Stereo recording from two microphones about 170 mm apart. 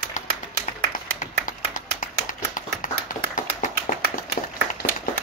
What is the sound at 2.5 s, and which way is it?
Tap, 50° left (ahead or behind).